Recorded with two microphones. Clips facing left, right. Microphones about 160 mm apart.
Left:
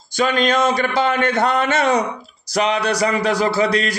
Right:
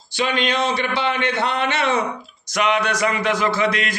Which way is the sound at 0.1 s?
45° left (ahead or behind).